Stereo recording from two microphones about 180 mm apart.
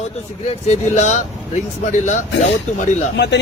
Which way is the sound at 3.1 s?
75° left (ahead or behind).